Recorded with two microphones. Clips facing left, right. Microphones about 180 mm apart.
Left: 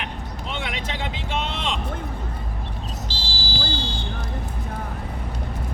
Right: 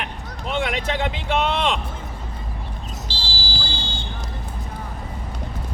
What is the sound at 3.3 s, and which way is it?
Vehicle, 30° right (ahead or behind).